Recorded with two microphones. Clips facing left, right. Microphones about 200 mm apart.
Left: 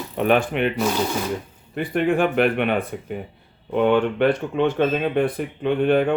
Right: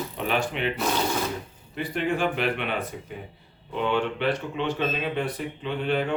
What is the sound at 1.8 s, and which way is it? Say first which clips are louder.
Speech: left 6 dB; 55° left (ahead or behind).